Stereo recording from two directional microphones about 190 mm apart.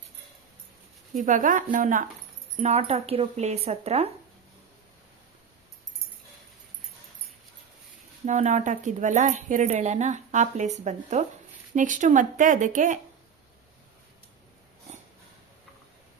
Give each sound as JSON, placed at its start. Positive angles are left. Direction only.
{"t": 1.1, "sound": "speech", "side_deg": -45}
{"t": 8.2, "sound": "speech", "side_deg": -40}